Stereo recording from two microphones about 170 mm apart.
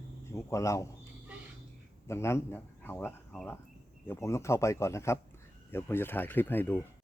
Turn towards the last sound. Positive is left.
turn(degrees=10)  # may be behind; listen again after turning